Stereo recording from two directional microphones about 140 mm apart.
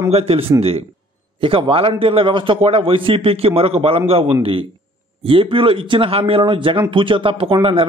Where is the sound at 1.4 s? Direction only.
40° right (ahead or behind).